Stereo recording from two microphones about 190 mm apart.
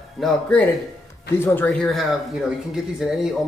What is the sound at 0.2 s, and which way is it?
Speech, 5° left (ahead or behind).